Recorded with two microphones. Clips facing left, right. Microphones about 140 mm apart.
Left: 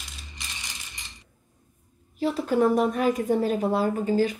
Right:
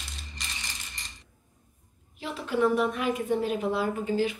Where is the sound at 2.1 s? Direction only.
40° left (ahead or behind).